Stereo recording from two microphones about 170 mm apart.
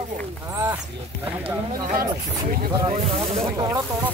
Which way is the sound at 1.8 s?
55° right (ahead or behind).